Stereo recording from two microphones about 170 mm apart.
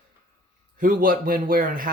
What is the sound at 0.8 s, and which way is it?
A man's voice, 55° right (ahead or behind).